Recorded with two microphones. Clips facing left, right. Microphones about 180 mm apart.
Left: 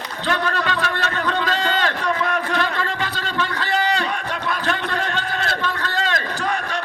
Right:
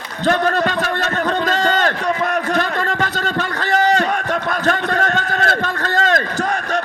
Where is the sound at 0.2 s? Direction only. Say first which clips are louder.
Right 7 dB; 45° right (ahead or behind).